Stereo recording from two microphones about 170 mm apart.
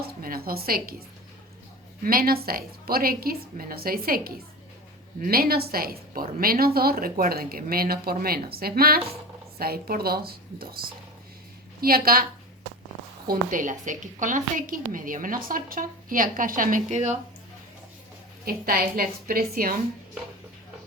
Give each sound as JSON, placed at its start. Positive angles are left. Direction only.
{"t": 0.2, "sound": "a woman's voice", "side_deg": -60}
{"t": 2.0, "sound": "a woman's voice", "side_deg": -60}
{"t": 13.2, "sound": "a woman's voice", "side_deg": -55}
{"t": 18.4, "sound": "a woman's voice", "side_deg": -60}